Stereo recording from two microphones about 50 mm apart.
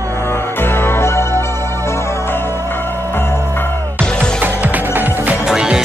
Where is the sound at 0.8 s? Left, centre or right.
Left.